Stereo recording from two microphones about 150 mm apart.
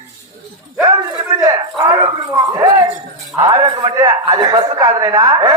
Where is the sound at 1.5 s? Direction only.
30° right (ahead or behind).